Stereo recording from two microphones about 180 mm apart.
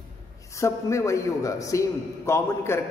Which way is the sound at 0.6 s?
15° left (ahead or behind).